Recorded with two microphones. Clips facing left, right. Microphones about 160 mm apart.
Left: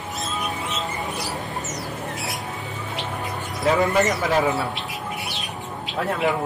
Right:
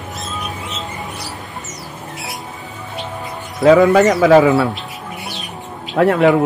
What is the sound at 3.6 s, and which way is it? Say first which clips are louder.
A man's voice: right 10 dB; 90° right.